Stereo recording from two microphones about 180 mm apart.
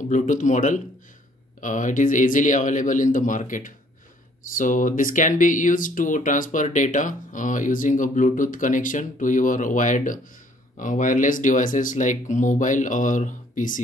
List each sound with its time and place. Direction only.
0.1 s speech: 45° left (ahead or behind)